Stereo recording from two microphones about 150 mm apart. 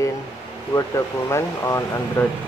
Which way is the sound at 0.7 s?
20° left (ahead or behind).